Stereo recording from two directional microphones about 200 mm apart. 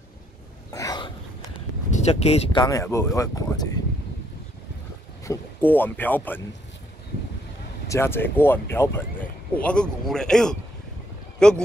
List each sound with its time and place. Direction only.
0.7 s a sound: 15° left (ahead or behind)
1.9 s speech: 35° left (ahead or behind); by 3.8 s 20° left (ahead or behind)
5.2 s speech: 10° left (ahead or behind)
7.9 s speech: 10° left (ahead or behind)